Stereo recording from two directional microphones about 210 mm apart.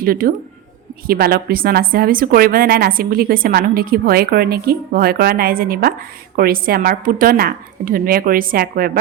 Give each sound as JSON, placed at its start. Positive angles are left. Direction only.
{"t": 0.0, "sound": "a woman's voice", "side_deg": -45}